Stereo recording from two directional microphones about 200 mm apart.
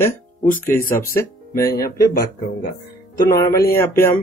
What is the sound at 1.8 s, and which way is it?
Speech, 50° left (ahead or behind).